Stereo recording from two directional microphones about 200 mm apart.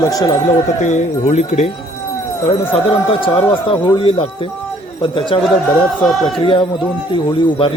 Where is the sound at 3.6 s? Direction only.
25° left (ahead or behind).